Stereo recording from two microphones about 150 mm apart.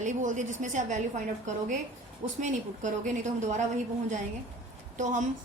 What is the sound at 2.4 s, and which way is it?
A woman's voice, 55° right (ahead or behind).